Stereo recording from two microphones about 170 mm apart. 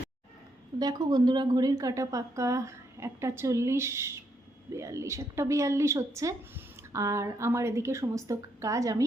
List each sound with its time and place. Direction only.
0.8 s a woman's voice: 25° right (ahead or behind)